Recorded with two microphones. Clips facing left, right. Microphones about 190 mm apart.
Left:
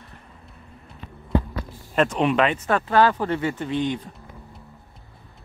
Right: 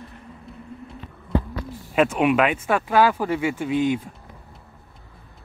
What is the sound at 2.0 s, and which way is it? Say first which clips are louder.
Speech: right 1 dB; 5° right (ahead or behind).